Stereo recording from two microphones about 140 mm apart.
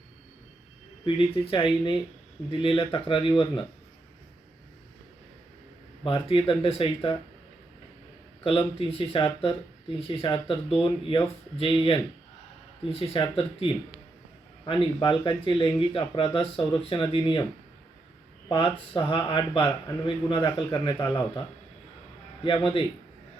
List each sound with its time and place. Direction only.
1.0 s speech: 40° left (ahead or behind)
6.1 s speech: 40° left (ahead or behind)
8.4 s speech: 40° left (ahead or behind)
18.4 s speech: 40° left (ahead or behind)
22.4 s speech: 40° left (ahead or behind)